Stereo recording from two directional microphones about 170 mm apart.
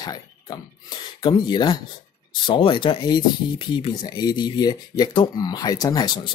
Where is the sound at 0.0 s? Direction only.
20° left (ahead or behind).